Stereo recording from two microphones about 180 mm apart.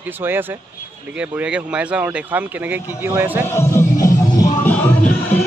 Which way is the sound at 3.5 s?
15° left (ahead or behind).